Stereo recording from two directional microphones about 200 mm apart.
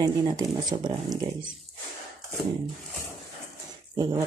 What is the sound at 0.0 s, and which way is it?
Speech, 20° right (ahead or behind).